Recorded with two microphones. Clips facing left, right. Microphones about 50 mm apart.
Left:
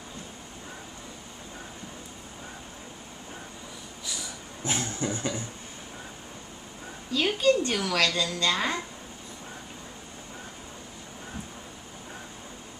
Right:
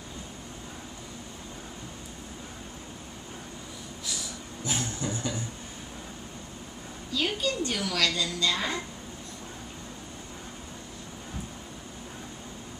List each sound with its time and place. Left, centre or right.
4.0 s snort: centre
4.6 s a sound: left
7.1 s a woman's voice: left